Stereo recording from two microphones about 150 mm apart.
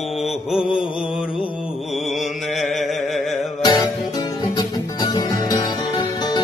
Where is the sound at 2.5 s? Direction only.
Centre (ahead or behind).